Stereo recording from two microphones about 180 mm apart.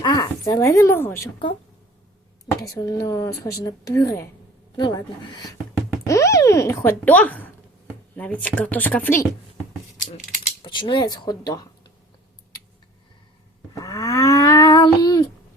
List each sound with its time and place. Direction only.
0.0 s a woman's voice: 20° left (ahead or behind)
2.6 s a woman's voice: 20° left (ahead or behind)
10.6 s speech: 25° left (ahead or behind)
13.7 s livestock: 15° left (ahead or behind)